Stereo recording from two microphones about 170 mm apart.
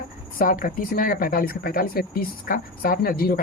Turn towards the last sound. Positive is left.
turn(degrees=60)  # may be behind; listen again after turning